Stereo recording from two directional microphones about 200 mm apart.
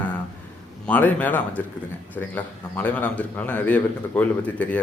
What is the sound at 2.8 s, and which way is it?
A man's voice, 5° left (ahead or behind).